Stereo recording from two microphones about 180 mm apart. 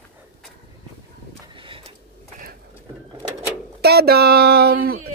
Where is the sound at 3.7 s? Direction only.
60° right (ahead or behind).